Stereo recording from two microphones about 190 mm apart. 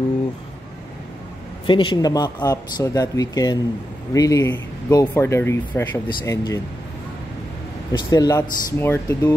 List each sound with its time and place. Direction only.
1.7 s speech: 25° left (ahead or behind)
7.9 s speech: 20° left (ahead or behind)